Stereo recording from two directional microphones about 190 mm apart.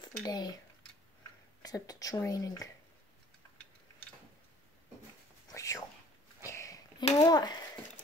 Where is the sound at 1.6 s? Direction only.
20° left (ahead or behind).